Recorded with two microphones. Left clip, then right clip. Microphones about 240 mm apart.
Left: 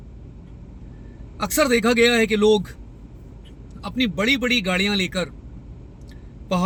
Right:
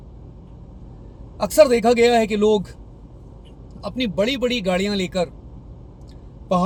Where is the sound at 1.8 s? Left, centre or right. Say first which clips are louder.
Right 2 dB; centre.